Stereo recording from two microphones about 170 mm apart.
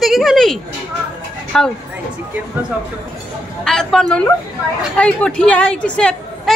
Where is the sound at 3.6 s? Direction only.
Centre (ahead or behind).